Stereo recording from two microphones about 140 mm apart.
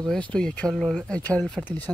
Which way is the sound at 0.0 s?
5° left (ahead or behind).